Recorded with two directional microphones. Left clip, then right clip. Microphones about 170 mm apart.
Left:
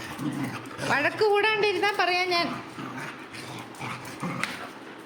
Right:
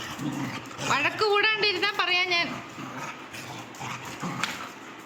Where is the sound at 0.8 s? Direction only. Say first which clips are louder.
Left 1 dB; 20° left (ahead or behind).